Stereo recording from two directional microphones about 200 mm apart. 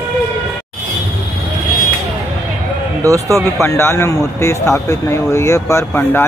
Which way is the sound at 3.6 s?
15° left (ahead or behind).